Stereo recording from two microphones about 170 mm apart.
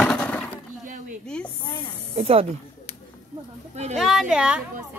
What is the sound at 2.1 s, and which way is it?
Speech, 35° right (ahead or behind).